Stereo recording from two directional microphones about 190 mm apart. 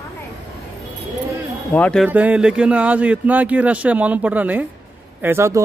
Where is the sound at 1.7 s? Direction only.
5° left (ahead or behind).